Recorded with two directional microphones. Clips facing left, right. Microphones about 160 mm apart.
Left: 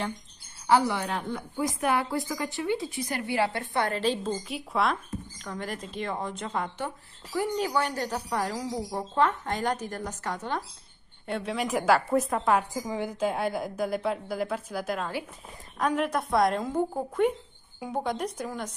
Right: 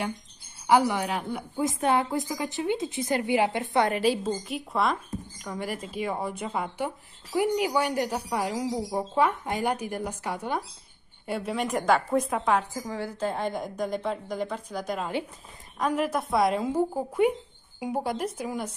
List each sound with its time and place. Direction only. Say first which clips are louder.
0.7 s speech: right 2 dB; 15° right (ahead or behind)
1.6 s a woman's voice: right 2 dB; 25° right (ahead or behind)
4.3 s a woman's voice: right 1 dB; centre (ahead or behind)
12.7 s a woman's voice: left 2 dB; 15° left (ahead or behind); by 18.7 s 5° right (ahead or behind)